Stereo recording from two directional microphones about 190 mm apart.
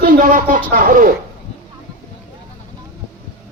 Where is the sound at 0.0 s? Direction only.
50° right (ahead or behind).